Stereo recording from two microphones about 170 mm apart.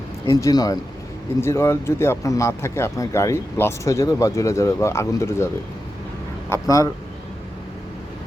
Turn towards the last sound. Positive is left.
turn(degrees=20)  # may be behind; listen again after turning